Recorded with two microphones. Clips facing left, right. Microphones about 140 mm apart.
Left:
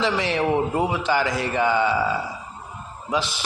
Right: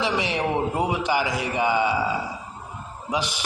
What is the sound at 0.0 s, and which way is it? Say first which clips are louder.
A man's voice: left 2 dB; 15° right (ahead or behind).